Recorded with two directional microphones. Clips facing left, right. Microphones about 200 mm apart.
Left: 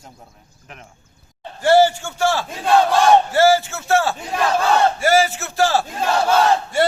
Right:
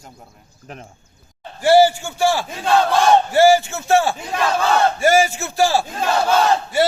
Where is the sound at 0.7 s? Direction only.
40° right (ahead or behind).